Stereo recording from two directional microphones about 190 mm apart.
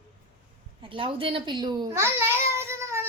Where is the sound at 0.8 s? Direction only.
25° right (ahead or behind).